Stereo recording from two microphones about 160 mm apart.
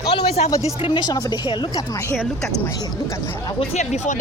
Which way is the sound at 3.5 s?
45° left (ahead or behind).